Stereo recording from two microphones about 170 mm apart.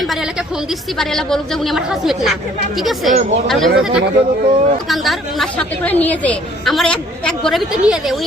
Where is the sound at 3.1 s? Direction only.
45° right (ahead or behind).